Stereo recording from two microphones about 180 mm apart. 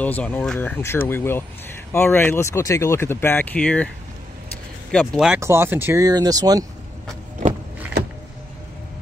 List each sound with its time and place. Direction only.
0.0 s speech: 10° left (ahead or behind)
4.9 s speech: centre (ahead or behind)
5.4 s speech: 15° right (ahead or behind)